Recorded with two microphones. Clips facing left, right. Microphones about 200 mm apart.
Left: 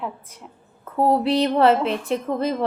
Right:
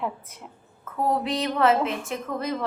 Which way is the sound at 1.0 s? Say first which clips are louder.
Left 7 dB; 30° left (ahead or behind).